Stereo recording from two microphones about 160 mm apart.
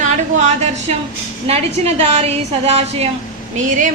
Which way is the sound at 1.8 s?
40° right (ahead or behind).